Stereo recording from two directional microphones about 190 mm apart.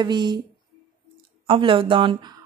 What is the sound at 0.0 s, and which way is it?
Speech, 20° right (ahead or behind).